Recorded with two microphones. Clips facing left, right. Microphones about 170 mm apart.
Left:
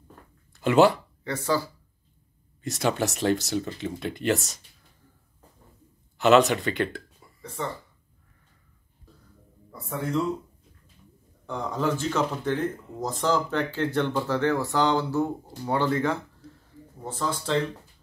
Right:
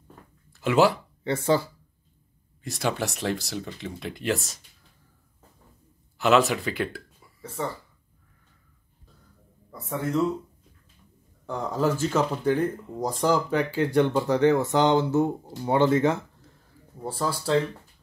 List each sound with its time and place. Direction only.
0.5 s speech: centre (ahead or behind)
1.2 s speech: 25° right (ahead or behind)
2.6 s speech: centre (ahead or behind)
6.1 s speech: centre (ahead or behind)
9.8 s speech: centre (ahead or behind)
11.4 s speech: 5° right (ahead or behind); by 16.2 s 20° right (ahead or behind)
17.0 s speech: 10° right (ahead or behind)